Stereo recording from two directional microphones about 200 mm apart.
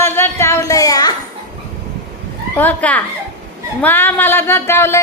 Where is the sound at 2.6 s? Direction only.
10° left (ahead or behind).